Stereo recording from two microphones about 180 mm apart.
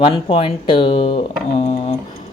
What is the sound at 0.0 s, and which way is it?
Speech, 30° left (ahead or behind).